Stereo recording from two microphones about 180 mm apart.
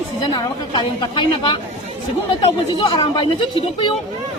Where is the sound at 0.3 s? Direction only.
25° left (ahead or behind).